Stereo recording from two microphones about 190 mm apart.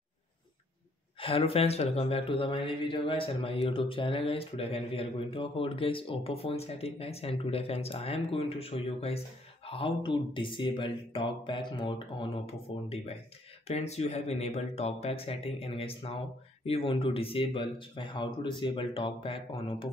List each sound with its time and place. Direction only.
1.2 s speech: 30° left (ahead or behind)